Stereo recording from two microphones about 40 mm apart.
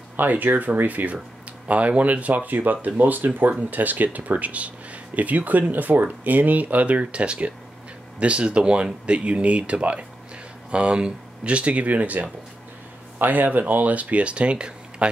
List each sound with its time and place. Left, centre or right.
0.2 s speech: right